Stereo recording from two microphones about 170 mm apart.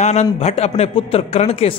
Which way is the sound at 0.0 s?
40° left (ahead or behind).